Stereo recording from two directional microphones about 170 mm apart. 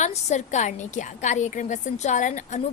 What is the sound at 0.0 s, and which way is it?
A woman's voice, 45° left (ahead or behind).